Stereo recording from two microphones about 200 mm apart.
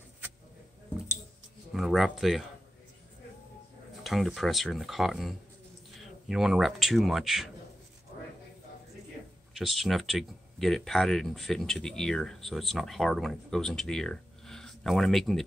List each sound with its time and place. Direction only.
1.7 s speech: centre (ahead or behind)
4.0 s speech: centre (ahead or behind)
9.5 s speech: centre (ahead or behind)